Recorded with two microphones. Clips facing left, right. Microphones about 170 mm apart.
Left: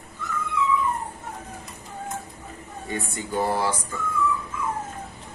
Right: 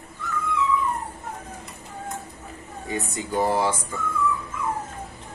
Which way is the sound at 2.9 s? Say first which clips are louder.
Right 1 dB; 20° right (ahead or behind).